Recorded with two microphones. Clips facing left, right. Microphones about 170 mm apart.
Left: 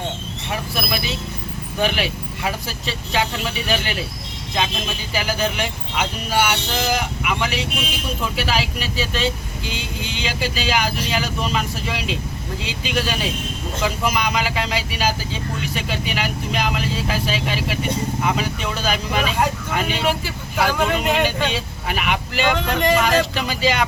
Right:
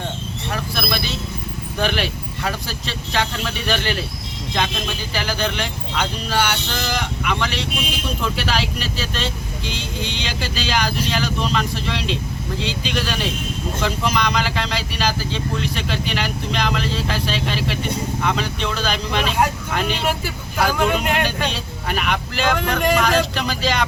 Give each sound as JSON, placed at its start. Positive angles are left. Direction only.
{"t": 0.5, "sound": "vehicle", "side_deg": 5}
{"t": 1.8, "sound": "speech", "side_deg": 0}
{"t": 5.1, "sound": "speech", "side_deg": 5}
{"t": 9.7, "sound": "speech", "side_deg": -35}
{"t": 10.2, "sound": "speech", "side_deg": 5}